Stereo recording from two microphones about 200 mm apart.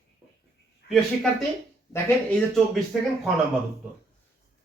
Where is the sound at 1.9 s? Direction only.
5° left (ahead or behind).